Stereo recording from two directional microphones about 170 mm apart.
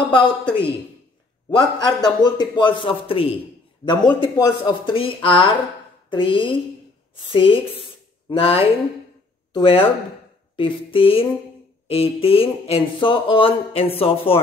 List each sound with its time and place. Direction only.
0.0 s a man's voice: 30° left (ahead or behind)